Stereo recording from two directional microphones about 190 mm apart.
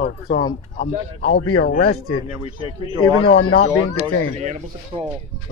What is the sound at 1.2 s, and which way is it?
Speech, 75° left (ahead or behind).